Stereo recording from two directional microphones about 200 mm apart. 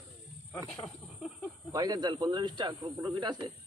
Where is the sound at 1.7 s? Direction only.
20° right (ahead or behind).